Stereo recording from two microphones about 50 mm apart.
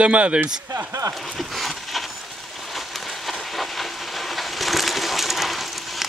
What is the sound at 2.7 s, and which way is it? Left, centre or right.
Train, centre.